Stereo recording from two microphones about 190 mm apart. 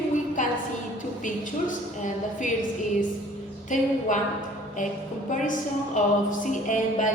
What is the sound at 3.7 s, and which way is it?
Speech, 40° left (ahead or behind).